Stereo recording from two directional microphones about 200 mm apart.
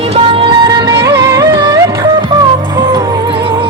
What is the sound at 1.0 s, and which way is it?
Music, 15° right (ahead or behind).